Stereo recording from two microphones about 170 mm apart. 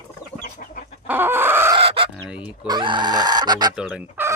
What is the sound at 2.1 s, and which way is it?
Fowl, 5° right (ahead or behind).